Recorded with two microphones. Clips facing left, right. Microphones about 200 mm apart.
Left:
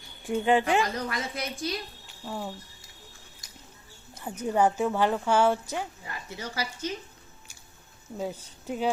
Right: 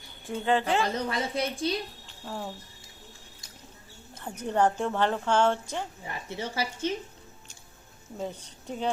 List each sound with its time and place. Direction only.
0.3 s a woman's voice: 15° left (ahead or behind)
0.9 s speech: 30° right (ahead or behind)
2.0 s cricket: 5° left (ahead or behind)
4.4 s a woman's voice: 10° left (ahead or behind)
6.0 s speech: 25° right (ahead or behind)
8.2 s a woman's voice: 5° left (ahead or behind)